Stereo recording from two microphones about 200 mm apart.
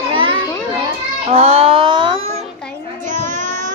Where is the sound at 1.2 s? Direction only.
30° right (ahead or behind).